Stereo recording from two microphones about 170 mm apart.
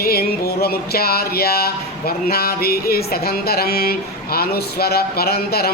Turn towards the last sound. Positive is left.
turn(degrees=65)  # may be behind; listen again after turning